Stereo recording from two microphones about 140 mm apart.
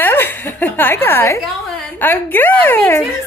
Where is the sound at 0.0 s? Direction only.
15° left (ahead or behind).